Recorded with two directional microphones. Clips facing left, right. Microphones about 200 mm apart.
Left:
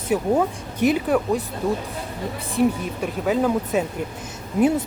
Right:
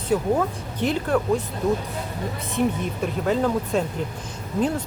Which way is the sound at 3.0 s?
5° left (ahead or behind).